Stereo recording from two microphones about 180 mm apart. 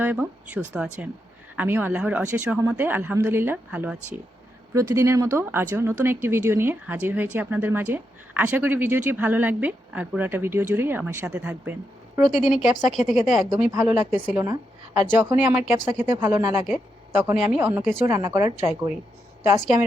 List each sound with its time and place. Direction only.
0.0 s a woman's voice: 10° right (ahead or behind)
13.7 s a woman's voice: 15° right (ahead or behind)